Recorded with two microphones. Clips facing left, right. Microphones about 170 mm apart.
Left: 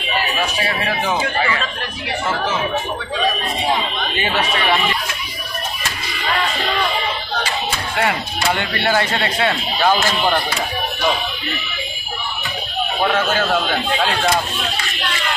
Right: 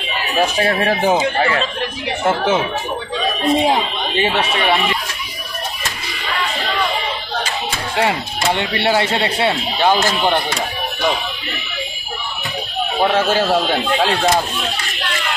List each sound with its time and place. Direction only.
0.4 s speech: 50° right (ahead or behind)
4.2 s speech: 30° right (ahead or behind)
8.0 s speech: 25° right (ahead or behind)
13.1 s speech: 30° right (ahead or behind)